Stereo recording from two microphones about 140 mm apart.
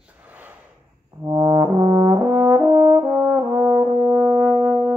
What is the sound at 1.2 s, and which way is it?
Brass instrument, 25° right (ahead or behind).